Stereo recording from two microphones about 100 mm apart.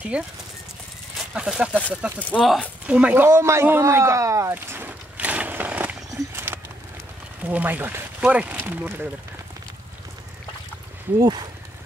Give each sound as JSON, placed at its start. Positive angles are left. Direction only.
{"t": 0.1, "sound": "speech", "side_deg": -10}
{"t": 1.3, "sound": "speech", "side_deg": -10}
{"t": 2.1, "sound": "speech", "side_deg": 15}
{"t": 2.9, "sound": "speech", "side_deg": -15}
{"t": 3.3, "sound": "a sound", "side_deg": -30}
{"t": 7.4, "sound": "speech", "side_deg": -15}
{"t": 11.1, "sound": "speech", "side_deg": -45}